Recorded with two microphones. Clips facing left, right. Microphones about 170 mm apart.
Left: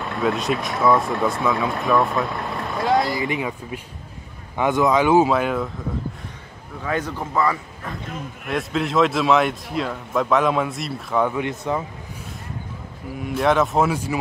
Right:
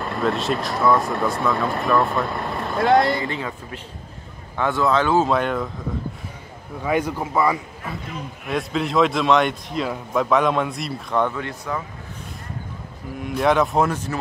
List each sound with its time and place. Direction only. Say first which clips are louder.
0.0 s speech: even; centre (ahead or behind)
3.2 s speech: left 3 dB; 15° left (ahead or behind)
5.3 s speech: even; 5° left (ahead or behind)
6.8 s speech: right 3 dB; 10° right (ahead or behind)
8.5 s speech: even; centre (ahead or behind)
11.3 s speech: left 4 dB; 20° left (ahead or behind)
13.2 s speech: even; centre (ahead or behind)